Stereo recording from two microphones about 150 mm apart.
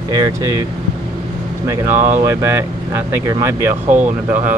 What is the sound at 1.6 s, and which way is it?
Speech, 15° right (ahead or behind).